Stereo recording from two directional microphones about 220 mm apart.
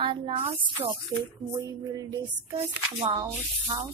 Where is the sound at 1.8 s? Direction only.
15° right (ahead or behind).